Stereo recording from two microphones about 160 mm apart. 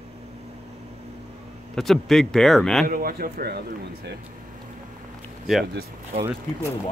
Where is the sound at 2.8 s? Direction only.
65° right (ahead or behind).